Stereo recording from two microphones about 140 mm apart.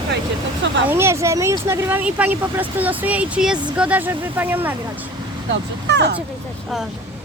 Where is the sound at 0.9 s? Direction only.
20° right (ahead or behind).